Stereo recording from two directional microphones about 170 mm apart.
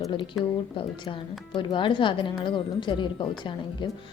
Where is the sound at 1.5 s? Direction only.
30° left (ahead or behind).